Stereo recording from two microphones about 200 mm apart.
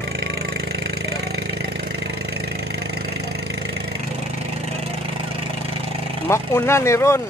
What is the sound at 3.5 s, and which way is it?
Engine, 55° right (ahead or behind).